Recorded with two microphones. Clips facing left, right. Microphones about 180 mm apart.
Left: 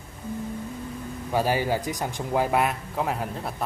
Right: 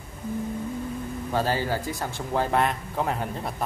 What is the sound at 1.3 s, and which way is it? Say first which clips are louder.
Speech: left 2 dB; 15° left (ahead or behind).